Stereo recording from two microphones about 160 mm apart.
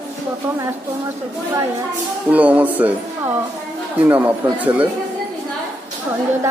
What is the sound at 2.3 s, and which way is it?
Speech, 10° right (ahead or behind).